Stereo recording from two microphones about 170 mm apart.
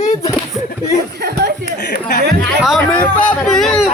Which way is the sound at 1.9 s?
70° left (ahead or behind).